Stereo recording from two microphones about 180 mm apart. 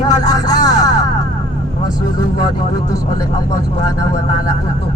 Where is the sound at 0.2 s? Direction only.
20° left (ahead or behind).